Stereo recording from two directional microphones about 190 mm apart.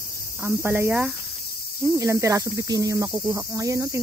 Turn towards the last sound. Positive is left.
turn(degrees=-15)  # may be behind; listen again after turning